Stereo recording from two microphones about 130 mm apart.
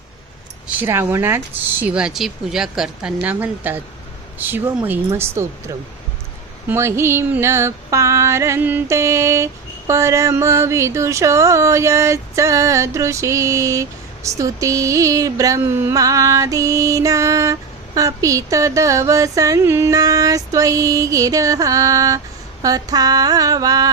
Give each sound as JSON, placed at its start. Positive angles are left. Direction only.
{"t": 0.8, "sound": "music", "side_deg": -20}
{"t": 1.8, "sound": "speech", "side_deg": -10}
{"t": 4.4, "sound": "music", "side_deg": -15}